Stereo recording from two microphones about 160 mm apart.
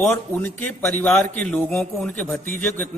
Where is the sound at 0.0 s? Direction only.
10° left (ahead or behind).